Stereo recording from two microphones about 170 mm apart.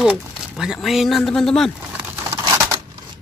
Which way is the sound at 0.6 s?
Centre (ahead or behind).